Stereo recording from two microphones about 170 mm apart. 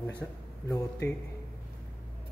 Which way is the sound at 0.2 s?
5° left (ahead or behind).